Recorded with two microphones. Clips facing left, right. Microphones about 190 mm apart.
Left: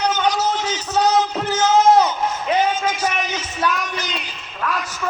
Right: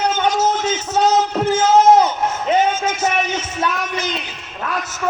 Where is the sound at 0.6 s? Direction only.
25° right (ahead or behind).